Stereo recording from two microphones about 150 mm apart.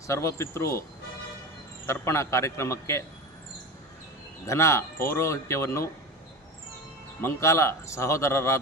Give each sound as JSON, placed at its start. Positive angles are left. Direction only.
{"t": 0.1, "sound": "speech", "side_deg": 20}
{"t": 1.9, "sound": "speech", "side_deg": 20}
{"t": 4.4, "sound": "speech", "side_deg": 20}
{"t": 7.2, "sound": "speech", "side_deg": 20}